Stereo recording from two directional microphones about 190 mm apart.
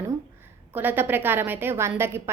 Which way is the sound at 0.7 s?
10° right (ahead or behind).